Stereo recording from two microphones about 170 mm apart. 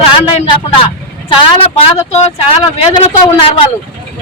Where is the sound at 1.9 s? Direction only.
35° left (ahead or behind).